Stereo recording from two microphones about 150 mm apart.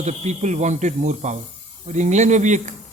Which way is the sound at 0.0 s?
50° right (ahead or behind).